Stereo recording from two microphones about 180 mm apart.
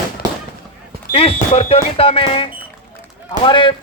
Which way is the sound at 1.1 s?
30° left (ahead or behind).